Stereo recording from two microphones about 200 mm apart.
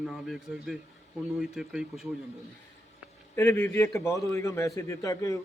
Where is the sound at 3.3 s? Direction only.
10° left (ahead or behind).